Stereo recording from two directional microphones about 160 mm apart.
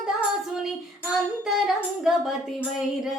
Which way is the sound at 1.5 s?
5° right (ahead or behind).